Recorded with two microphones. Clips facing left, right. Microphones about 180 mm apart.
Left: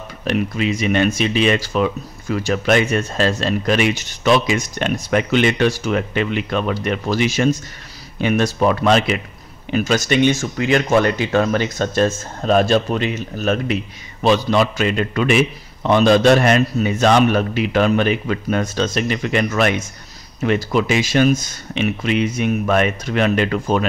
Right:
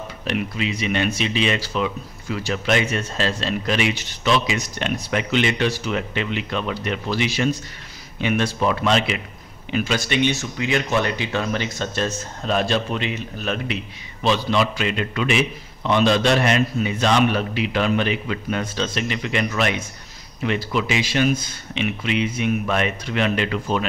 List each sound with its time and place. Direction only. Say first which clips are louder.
0.3 s speech: left 5 dB; 45° left (ahead or behind)